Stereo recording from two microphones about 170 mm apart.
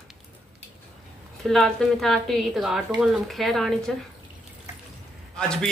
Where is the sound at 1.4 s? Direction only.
Centre (ahead or behind).